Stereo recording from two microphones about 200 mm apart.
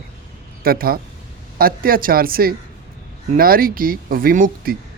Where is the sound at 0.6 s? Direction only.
50° right (ahead or behind).